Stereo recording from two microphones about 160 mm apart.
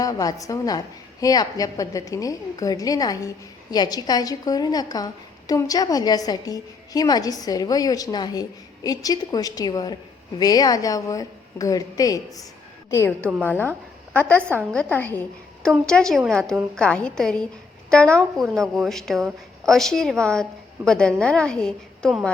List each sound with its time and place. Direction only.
0.0 s a woman's voice: 20° left (ahead or behind); by 22.3 s centre (ahead or behind)